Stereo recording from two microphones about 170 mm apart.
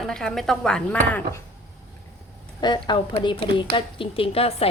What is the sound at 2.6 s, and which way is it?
A woman's voice, 25° left (ahead or behind).